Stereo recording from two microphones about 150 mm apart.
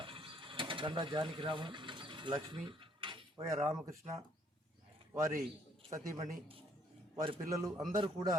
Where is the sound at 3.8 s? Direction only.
20° right (ahead or behind).